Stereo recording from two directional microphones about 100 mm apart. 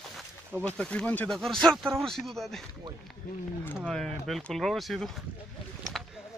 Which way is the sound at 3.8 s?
5° left (ahead or behind).